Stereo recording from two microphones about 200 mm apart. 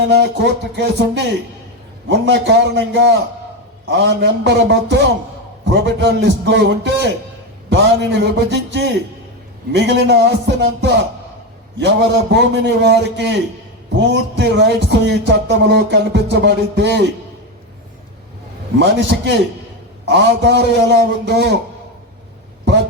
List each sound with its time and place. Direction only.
0.1 s speech: 60° right (ahead or behind)
18.8 s speech: 60° right (ahead or behind)